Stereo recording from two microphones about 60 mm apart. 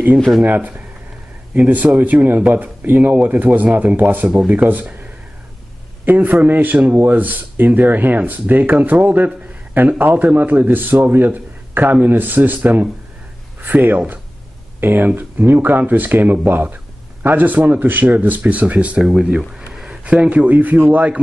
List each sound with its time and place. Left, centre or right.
0.4 s speech: right
6.0 s a man's voice: right